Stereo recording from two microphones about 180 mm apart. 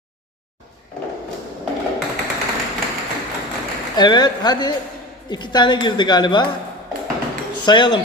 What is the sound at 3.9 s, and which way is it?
A man's voice, 25° left (ahead or behind).